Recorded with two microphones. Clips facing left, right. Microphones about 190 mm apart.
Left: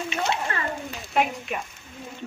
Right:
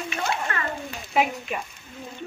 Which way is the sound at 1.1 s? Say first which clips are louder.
Right 1 dB; centre (ahead or behind).